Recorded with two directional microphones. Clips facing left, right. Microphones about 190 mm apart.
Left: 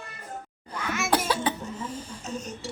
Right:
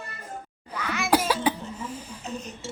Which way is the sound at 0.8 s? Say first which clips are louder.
Even; 50° left (ahead or behind).